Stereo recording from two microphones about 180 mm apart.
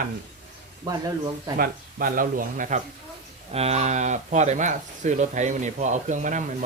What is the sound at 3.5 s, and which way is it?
Speech, 35° right (ahead or behind).